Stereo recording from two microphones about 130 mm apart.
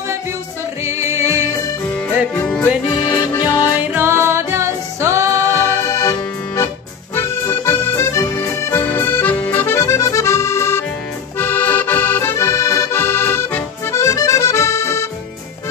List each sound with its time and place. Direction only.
0.8 s music: 20° right (ahead or behind)
2.3 s music: 10° left (ahead or behind)
3.0 s music: 25° left (ahead or behind)
3.9 s music: 20° right (ahead or behind)
5.5 s accordion: 20° left (ahead or behind)